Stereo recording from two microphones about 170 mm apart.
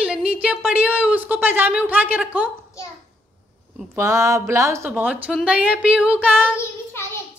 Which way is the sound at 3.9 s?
15° right (ahead or behind).